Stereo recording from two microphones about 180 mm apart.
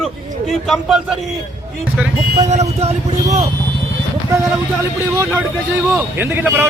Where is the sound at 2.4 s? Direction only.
35° right (ahead or behind).